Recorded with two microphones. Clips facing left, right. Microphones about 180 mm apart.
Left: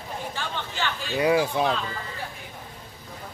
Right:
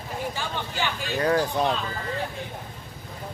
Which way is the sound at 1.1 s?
10° left (ahead or behind).